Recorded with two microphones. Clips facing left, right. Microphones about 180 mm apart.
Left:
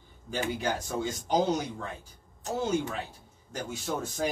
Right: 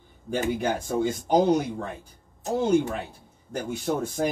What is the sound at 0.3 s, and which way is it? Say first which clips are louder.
Speech: right 5 dB; 50° right (ahead or behind).